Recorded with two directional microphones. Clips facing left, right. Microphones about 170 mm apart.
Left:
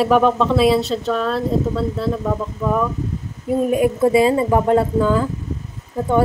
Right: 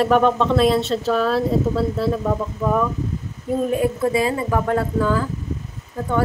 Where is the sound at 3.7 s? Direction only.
15° left (ahead or behind).